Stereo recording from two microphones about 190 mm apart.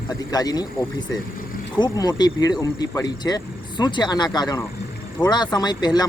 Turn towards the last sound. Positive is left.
turn(degrees=20)  # may be behind; listen again after turning